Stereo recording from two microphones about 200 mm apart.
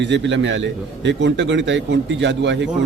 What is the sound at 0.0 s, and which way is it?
A man's voice, 65° right (ahead or behind).